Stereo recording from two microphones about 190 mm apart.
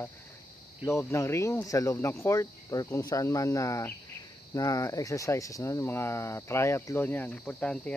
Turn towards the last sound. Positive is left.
turn(degrees=5)  # may be behind; listen again after turning